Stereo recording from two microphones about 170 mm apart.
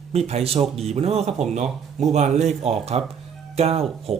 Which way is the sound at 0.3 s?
35° right (ahead or behind).